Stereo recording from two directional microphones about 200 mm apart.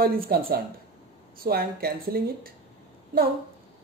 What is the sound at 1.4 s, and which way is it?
Speech, 50° right (ahead or behind).